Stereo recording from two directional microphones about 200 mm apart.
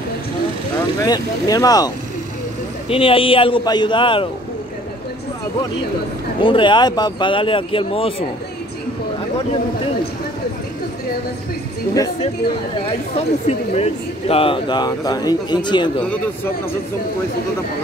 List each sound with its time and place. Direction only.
1.0 s speech: 20° left (ahead or behind)
2.9 s speech: 25° left (ahead or behind)
6.4 s speech: 25° left (ahead or behind)
13.1 s speech: 30° left (ahead or behind)